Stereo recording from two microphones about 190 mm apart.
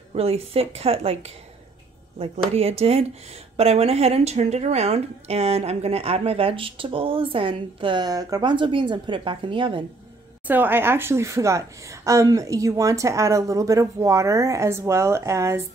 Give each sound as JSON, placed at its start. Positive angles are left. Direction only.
{"t": 0.1, "sound": "a woman's voice", "side_deg": -30}
{"t": 10.4, "sound": "a woman's voice", "side_deg": -10}